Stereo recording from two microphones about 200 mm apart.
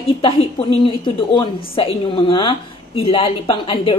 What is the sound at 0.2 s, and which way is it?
A woman's voice, 25° left (ahead or behind).